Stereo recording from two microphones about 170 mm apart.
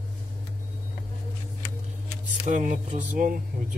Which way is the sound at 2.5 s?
50° right (ahead or behind).